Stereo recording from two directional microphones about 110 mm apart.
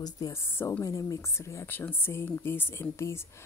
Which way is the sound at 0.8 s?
30° left (ahead or behind).